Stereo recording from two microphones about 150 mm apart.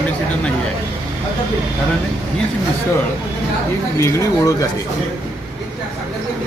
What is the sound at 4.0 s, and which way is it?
Speech, 20° left (ahead or behind).